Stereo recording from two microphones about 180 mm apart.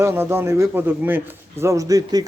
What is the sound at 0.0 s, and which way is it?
Speech, 15° right (ahead or behind).